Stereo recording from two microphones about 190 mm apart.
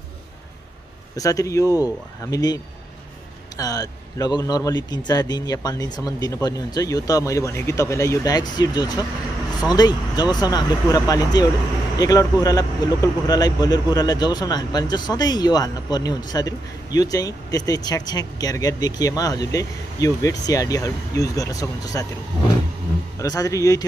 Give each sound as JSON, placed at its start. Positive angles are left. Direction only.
{"t": 1.1, "sound": "speech", "side_deg": 20}
{"t": 23.1, "sound": "speech", "side_deg": 20}